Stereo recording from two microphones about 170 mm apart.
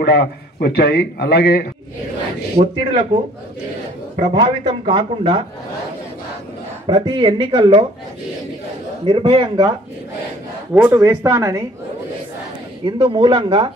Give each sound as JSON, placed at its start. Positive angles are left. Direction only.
{"t": 0.0, "sound": "a man's voice", "side_deg": 70}
{"t": 2.5, "sound": "speech", "side_deg": -30}
{"t": 4.2, "sound": "speech", "side_deg": -30}
{"t": 6.9, "sound": "speech", "side_deg": -30}
{"t": 9.0, "sound": "speech", "side_deg": -30}
{"t": 10.7, "sound": "speech", "side_deg": -10}
{"t": 12.8, "sound": "speech", "side_deg": -25}